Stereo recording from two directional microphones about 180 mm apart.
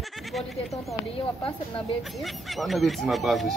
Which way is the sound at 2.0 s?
Centre (ahead or behind).